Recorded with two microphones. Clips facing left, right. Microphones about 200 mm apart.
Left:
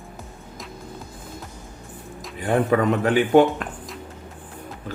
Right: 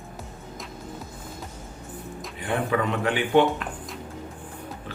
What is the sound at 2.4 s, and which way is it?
Speech, 45° left (ahead or behind).